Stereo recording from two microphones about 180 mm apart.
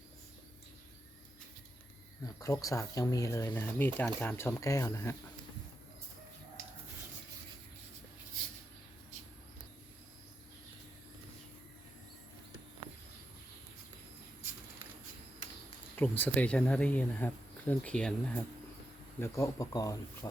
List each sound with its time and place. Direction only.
2.2 s speech: 20° left (ahead or behind)
16.0 s speech: 10° left (ahead or behind)
19.2 s speech: 15° left (ahead or behind)